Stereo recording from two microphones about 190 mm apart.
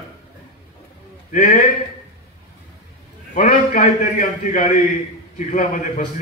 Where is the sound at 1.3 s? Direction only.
45° left (ahead or behind).